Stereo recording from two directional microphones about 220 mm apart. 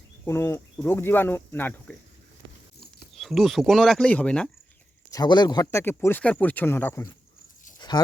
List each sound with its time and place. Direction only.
0.3 s speech: 10° left (ahead or behind)
5.1 s speech: 20° left (ahead or behind)
7.8 s dog: 20° left (ahead or behind)